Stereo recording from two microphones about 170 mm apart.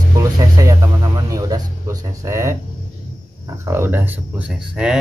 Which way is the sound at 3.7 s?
15° right (ahead or behind).